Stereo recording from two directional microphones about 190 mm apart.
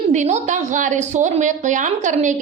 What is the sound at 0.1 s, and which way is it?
A woman's voice, 40° right (ahead or behind).